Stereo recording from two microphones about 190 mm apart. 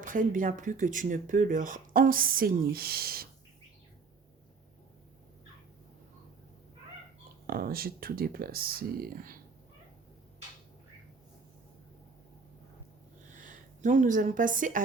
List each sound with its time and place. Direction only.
0.0 s speech: 45° right (ahead or behind)
7.4 s speech: 50° right (ahead or behind)
13.4 s speech: 40° right (ahead or behind)